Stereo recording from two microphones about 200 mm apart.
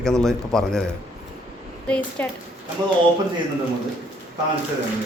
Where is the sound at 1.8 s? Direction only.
5° left (ahead or behind).